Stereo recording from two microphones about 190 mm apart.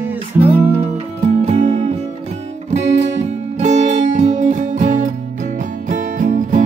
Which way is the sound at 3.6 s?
40° right (ahead or behind).